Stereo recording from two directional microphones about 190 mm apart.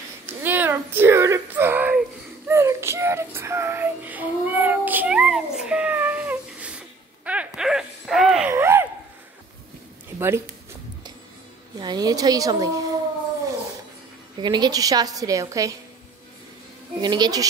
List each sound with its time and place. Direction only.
0.4 s a sound: 10° right (ahead or behind)
7.2 s dog: 5° right (ahead or behind)
10.1 s speech: 15° right (ahead or behind)
11.8 s a woman's voice: 20° right (ahead or behind)
14.4 s a woman's voice: 25° right (ahead or behind)
17.0 s a woman's voice: 20° right (ahead or behind)